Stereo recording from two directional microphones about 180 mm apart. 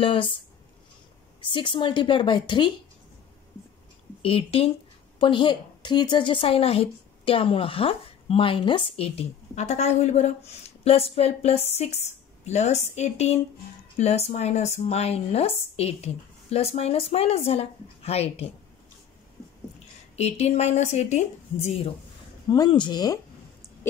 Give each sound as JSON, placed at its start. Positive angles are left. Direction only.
{"t": 0.0, "sound": "a woman's voice", "side_deg": 30}
{"t": 1.4, "sound": "a woman's voice", "side_deg": 25}
{"t": 4.2, "sound": "a woman's voice", "side_deg": 30}
{"t": 20.2, "sound": "a woman's voice", "side_deg": 35}
{"t": 22.5, "sound": "a woman's voice", "side_deg": 25}